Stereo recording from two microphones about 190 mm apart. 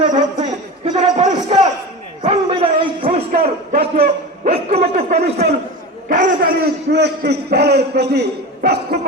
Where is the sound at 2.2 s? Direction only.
30° right (ahead or behind).